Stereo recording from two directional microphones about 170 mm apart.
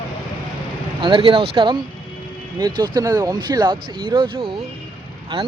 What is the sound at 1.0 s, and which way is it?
Speech, 30° right (ahead or behind).